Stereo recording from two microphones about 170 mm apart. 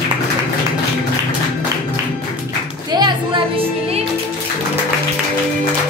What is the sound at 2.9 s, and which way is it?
Music, 25° right (ahead or behind).